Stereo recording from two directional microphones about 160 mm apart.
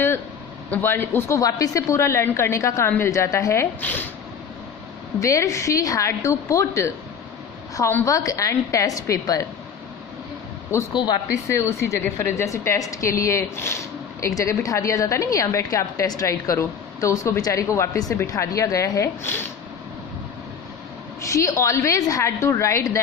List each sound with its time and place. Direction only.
0.7 s a woman's voice: 10° left (ahead or behind)
5.2 s a woman's voice: 20° left (ahead or behind)
10.7 s a woman's voice: 25° left (ahead or behind)
11.4 s a woman's voice: 15° left (ahead or behind)
21.2 s a woman's voice: 20° left (ahead or behind)